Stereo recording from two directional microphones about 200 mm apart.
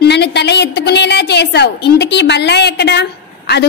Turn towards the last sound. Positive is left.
turn(degrees=55)  # may be behind; listen again after turning